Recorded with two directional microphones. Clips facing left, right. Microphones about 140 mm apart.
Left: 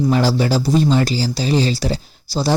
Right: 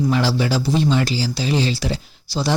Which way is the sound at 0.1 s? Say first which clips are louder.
Left 3 dB; 40° left (ahead or behind).